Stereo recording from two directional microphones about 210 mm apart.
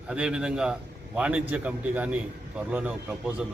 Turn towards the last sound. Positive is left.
turn(degrees=-5)  # may be behind; listen again after turning